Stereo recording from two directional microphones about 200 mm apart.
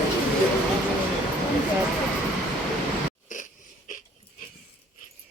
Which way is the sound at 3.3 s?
40° left (ahead or behind).